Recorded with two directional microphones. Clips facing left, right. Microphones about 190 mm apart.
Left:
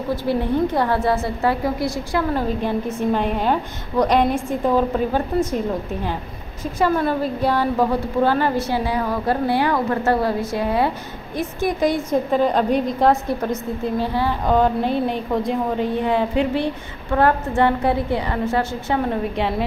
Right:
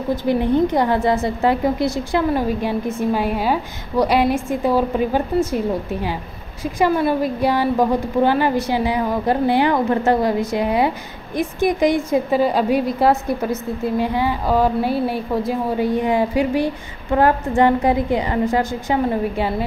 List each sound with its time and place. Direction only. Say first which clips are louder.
0.1 s a woman's voice: right 3 dB; 15° right (ahead or behind)
2.4 s a woman's voice: right 1 dB; 10° right (ahead or behind)